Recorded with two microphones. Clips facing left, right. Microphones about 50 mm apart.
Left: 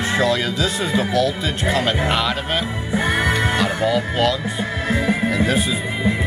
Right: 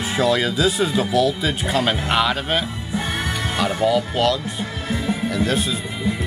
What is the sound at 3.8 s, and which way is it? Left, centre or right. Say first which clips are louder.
Speech: right 2 dB; centre.